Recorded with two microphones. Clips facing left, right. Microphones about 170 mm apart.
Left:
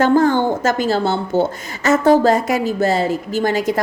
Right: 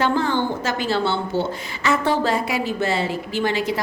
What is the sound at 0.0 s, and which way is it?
A woman's voice, 45° left (ahead or behind).